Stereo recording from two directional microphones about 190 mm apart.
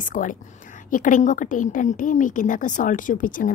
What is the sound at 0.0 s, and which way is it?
Speech, 45° left (ahead or behind).